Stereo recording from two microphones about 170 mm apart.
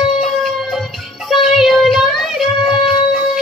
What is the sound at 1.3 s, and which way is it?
Music, centre (ahead or behind).